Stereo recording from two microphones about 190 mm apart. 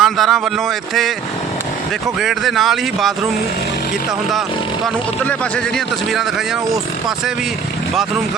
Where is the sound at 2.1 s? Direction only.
Centre (ahead or behind).